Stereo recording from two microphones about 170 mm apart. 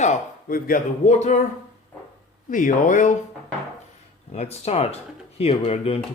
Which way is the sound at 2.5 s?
50° left (ahead or behind).